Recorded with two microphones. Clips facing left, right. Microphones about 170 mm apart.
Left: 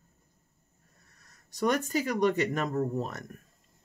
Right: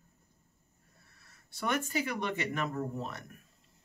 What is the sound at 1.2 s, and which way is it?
Speech, 40° left (ahead or behind).